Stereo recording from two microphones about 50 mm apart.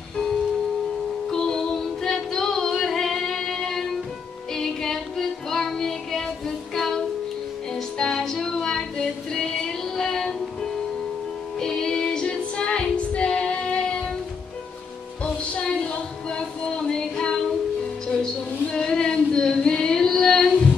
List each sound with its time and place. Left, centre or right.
1.3 s music: centre
8.0 s female singing: centre
15.6 s a sound: centre
18.0 s female singing: centre